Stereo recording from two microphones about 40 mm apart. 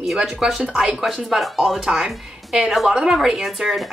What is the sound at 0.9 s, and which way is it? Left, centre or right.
A woman's voice, centre.